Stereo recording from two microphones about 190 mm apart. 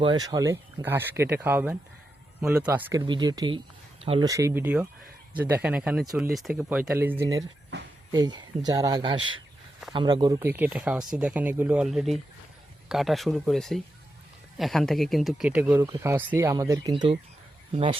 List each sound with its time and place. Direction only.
0.0 s speech: 25° right (ahead or behind)
3.0 s speech: 25° right (ahead or behind)
4.3 s speech: 15° right (ahead or behind)
7.7 s a sound: 65° right (ahead or behind)
8.1 s speech: 20° right (ahead or behind)
16.9 s speech: 30° right (ahead or behind)